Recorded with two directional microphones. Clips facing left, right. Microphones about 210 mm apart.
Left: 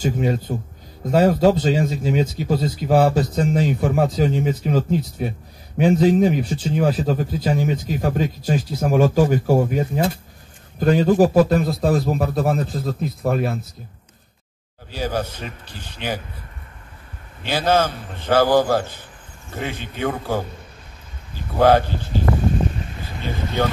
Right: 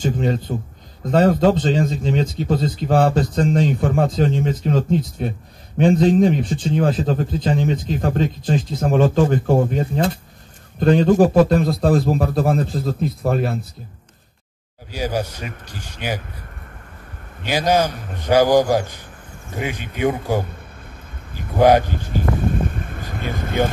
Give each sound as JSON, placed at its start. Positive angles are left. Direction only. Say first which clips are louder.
{"t": 0.0, "sound": "a man's voice", "louder": "even", "side_deg": 10}
{"t": 14.9, "sound": "a man's voice", "louder": "right 1 dB", "side_deg": -10}
{"t": 17.5, "sound": "a man's voice", "louder": "right 1 dB", "side_deg": -15}
{"t": 21.5, "sound": "a man's voice", "louder": "right 1 dB", "side_deg": -15}
{"t": 22.4, "sound": "a sound", "louder": "even", "side_deg": -55}
{"t": 23.3, "sound": "speech", "louder": "right 2 dB", "side_deg": -50}